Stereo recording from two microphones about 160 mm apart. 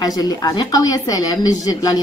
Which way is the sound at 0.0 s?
25° left (ahead or behind).